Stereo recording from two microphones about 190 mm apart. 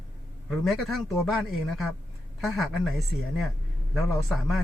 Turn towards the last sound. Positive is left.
turn(degrees=0)  # may be behind; listen again after turning